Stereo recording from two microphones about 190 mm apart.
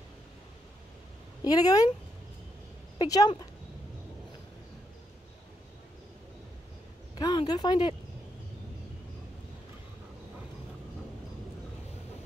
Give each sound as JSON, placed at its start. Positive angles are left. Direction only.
{"t": 1.4, "sound": "a woman's voice", "side_deg": 20}
{"t": 3.0, "sound": "a woman's voice", "side_deg": 20}
{"t": 7.2, "sound": "speech", "side_deg": 20}